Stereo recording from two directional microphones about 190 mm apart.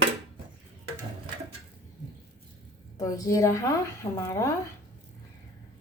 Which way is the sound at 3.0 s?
20° left (ahead or behind).